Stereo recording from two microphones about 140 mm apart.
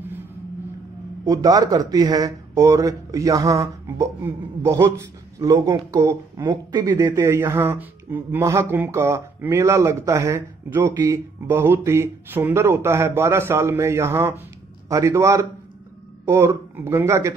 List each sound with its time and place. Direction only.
1.2 s a man's voice: 25° right (ahead or behind)